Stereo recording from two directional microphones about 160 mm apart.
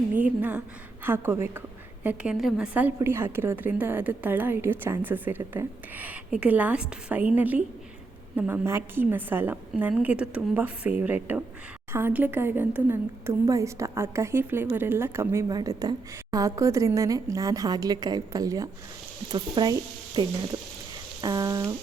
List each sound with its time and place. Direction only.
0.1 s a woman's voice: 10° right (ahead or behind)